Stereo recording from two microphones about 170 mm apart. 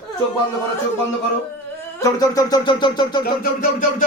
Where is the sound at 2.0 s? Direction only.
20° left (ahead or behind).